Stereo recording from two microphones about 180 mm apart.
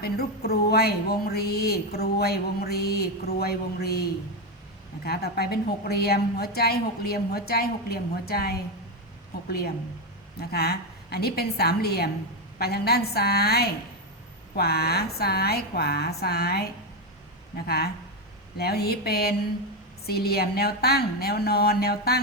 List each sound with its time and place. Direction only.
0.0 s a woman's voice: 60° left (ahead or behind)
10.5 s a woman's voice: 65° left (ahead or behind)
17.7 s a woman's voice: 60° left (ahead or behind)